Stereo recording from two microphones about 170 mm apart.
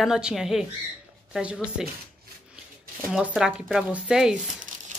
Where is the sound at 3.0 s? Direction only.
10° right (ahead or behind).